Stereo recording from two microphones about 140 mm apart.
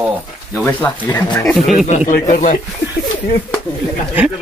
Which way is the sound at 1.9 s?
55° left (ahead or behind).